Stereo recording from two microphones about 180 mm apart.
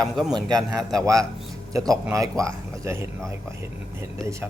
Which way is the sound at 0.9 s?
20° right (ahead or behind).